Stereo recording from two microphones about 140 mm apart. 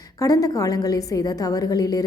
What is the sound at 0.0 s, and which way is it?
A woman's voice, 25° left (ahead or behind).